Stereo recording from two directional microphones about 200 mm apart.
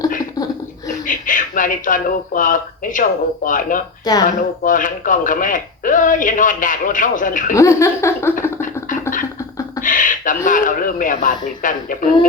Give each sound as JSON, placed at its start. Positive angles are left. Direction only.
{"t": 1.0, "sound": "speech", "side_deg": 40}
{"t": 7.5, "sound": "speech", "side_deg": 15}
{"t": 8.6, "sound": "a sound", "side_deg": 40}
{"t": 9.8, "sound": "speech", "side_deg": 40}